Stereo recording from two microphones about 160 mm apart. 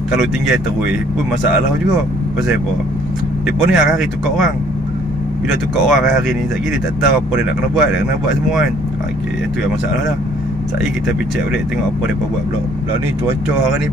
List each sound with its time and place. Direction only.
0.1 s speech: 5° right (ahead or behind)
3.4 s speech: 5° right (ahead or behind)
5.5 s speech: centre (ahead or behind)